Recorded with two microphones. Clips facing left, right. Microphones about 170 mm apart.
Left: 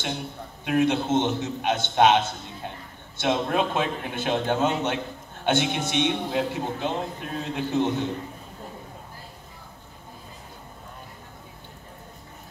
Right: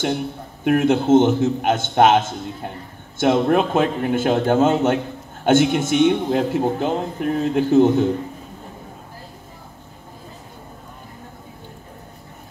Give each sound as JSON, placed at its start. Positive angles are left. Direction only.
{"t": 0.7, "sound": "a man's voice", "side_deg": -50}